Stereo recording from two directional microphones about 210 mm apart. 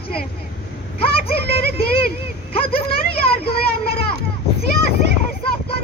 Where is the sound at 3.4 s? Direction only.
45° left (ahead or behind).